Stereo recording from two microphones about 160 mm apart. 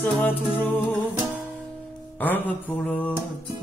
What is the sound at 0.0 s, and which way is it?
Speech, 10° left (ahead or behind).